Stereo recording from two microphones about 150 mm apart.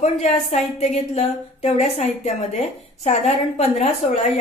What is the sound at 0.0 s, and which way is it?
A woman's voice, 45° left (ahead or behind).